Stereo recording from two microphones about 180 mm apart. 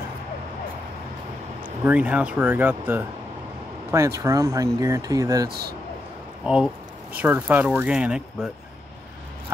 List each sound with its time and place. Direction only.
1.9 s speech: 10° right (ahead or behind)
5.5 s speech: 60° right (ahead or behind)
6.4 s speech: 5° right (ahead or behind)